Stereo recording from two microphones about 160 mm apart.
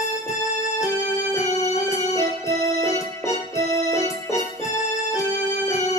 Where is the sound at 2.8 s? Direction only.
20° left (ahead or behind).